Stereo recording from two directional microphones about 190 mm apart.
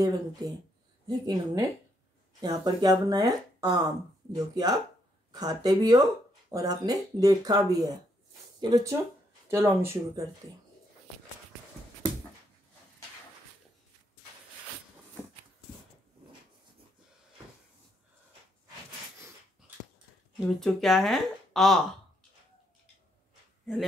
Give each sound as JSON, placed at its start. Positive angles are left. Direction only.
{"t": 0.0, "sound": "speech", "side_deg": -20}
{"t": 20.3, "sound": "speech", "side_deg": 0}